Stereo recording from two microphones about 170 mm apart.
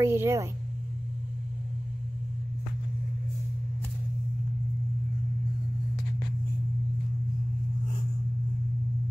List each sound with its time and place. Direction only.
0.0 s speech: 15° right (ahead or behind)